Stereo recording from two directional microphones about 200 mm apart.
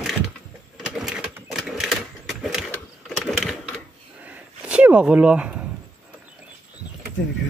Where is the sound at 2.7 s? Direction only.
5° left (ahead or behind).